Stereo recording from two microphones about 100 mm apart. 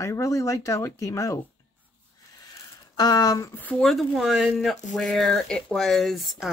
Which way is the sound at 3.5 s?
15° left (ahead or behind).